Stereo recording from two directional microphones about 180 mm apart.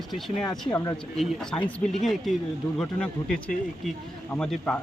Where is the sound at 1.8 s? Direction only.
5° left (ahead or behind).